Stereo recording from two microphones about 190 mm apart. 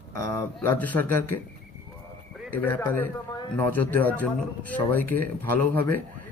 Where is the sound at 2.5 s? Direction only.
10° left (ahead or behind).